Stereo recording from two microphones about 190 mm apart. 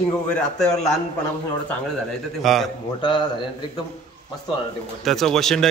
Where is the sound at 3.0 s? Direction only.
25° left (ahead or behind).